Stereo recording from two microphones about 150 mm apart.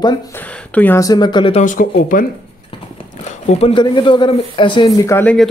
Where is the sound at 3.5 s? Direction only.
40° left (ahead or behind).